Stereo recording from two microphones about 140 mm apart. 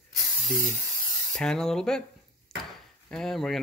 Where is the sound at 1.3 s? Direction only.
5° left (ahead or behind).